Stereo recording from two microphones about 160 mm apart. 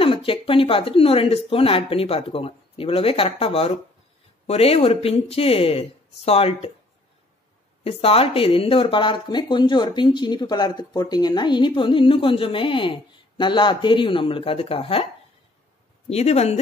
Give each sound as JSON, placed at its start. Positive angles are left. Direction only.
{"t": 0.0, "sound": "speech", "side_deg": 35}
{"t": 7.8, "sound": "speech", "side_deg": 35}
{"t": 16.1, "sound": "speech", "side_deg": 40}